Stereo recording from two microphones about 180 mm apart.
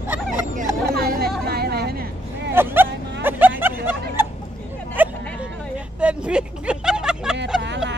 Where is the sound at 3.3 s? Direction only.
10° right (ahead or behind).